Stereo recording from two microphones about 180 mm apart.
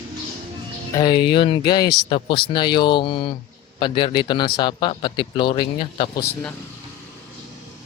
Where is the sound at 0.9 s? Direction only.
25° left (ahead or behind).